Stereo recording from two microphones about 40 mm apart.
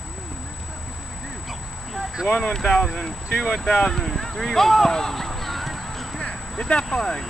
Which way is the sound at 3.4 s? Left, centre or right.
Centre.